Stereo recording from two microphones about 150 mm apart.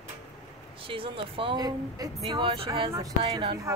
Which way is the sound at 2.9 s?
25° right (ahead or behind).